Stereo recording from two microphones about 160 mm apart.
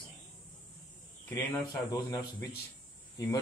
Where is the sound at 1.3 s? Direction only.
20° left (ahead or behind).